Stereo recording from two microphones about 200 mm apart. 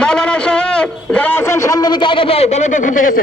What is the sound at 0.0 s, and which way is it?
A man's voice, 5° left (ahead or behind).